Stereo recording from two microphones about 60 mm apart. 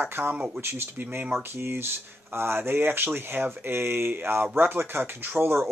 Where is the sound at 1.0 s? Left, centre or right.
Right.